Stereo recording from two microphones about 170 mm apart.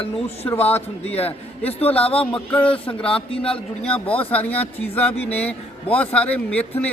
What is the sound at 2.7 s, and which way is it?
Speech, 30° left (ahead or behind).